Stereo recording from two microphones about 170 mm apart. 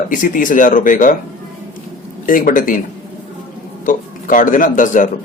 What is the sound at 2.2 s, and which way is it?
Speech, 55° left (ahead or behind).